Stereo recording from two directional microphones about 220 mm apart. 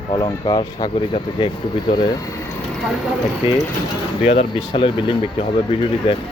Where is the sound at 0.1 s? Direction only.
20° left (ahead or behind).